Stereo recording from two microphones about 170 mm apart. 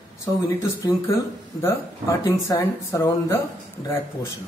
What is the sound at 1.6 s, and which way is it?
Speech, 15° left (ahead or behind).